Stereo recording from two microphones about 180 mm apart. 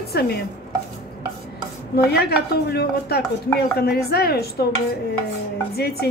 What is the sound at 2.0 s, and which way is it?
Music, 60° left (ahead or behind).